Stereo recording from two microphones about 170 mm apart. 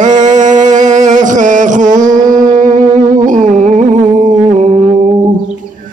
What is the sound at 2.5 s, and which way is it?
Music, 50° right (ahead or behind).